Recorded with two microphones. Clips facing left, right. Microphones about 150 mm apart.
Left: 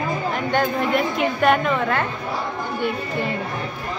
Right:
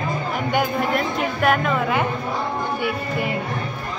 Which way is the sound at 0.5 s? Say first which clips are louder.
Left 1 dB; 10° right (ahead or behind).